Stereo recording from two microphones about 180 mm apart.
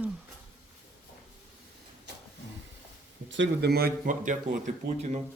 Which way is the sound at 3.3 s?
75° right (ahead or behind).